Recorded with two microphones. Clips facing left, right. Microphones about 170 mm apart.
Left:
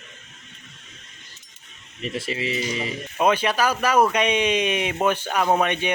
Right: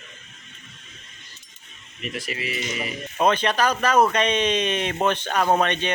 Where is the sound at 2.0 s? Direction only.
25° left (ahead or behind).